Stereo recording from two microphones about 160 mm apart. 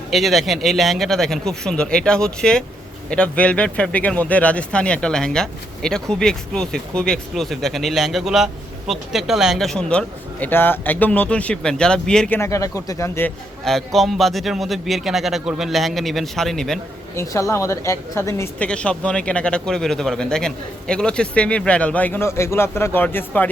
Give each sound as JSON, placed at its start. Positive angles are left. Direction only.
{"t": 0.1, "sound": "speech", "side_deg": 0}
{"t": 12.4, "sound": "speech", "side_deg": 20}
{"t": 13.7, "sound": "speech", "side_deg": 0}
{"t": 17.2, "sound": "speech", "side_deg": 20}